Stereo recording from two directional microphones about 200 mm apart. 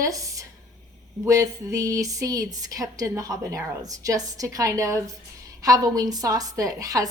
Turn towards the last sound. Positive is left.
turn(degrees=-20)  # may be behind; listen again after turning